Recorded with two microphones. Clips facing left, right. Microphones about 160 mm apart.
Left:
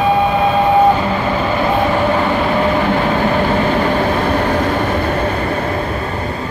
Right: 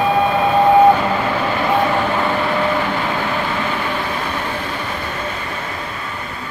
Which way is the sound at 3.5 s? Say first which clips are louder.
Left 7 dB; 40° left (ahead or behind).